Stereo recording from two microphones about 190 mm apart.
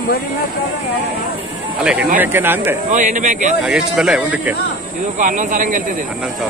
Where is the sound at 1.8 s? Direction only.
5° right (ahead or behind).